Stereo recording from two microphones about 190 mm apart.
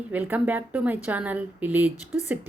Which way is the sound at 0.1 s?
10° right (ahead or behind).